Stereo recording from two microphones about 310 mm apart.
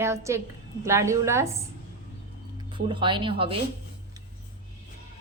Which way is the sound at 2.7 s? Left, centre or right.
Centre.